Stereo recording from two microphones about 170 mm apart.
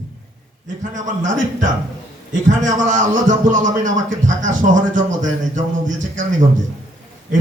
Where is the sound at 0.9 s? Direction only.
50° right (ahead or behind).